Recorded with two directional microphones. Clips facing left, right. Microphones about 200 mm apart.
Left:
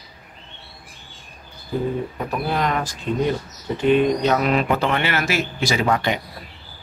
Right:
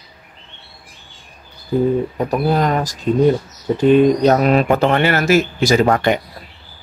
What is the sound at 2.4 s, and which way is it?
Speech, 40° right (ahead or behind).